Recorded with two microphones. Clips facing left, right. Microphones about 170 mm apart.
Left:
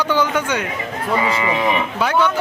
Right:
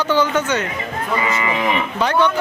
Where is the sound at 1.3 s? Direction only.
25° left (ahead or behind).